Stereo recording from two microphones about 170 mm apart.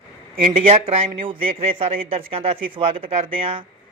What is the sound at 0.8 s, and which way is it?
Speech, 35° right (ahead or behind).